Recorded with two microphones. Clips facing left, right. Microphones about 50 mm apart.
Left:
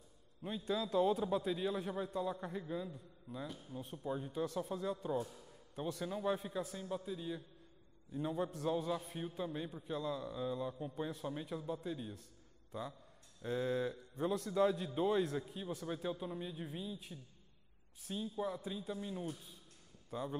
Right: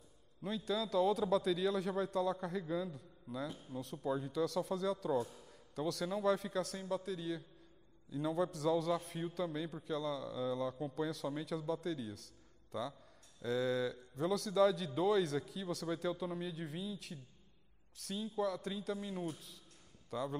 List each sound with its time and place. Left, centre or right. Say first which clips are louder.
0.7 s a man's voice: even; right
3.4 s speech: right 3 dB; centre
3.7 s a man's voice: right 3 dB; right
9.0 s a man's voice: right 3 dB; right
9.9 s speech: right 1 dB; left
10.4 s a man's voice: right 4 dB; right
17.9 s a man's voice: right 2 dB; right
18.9 s speech: right 1 dB; right
20.1 s speech: right 2 dB; right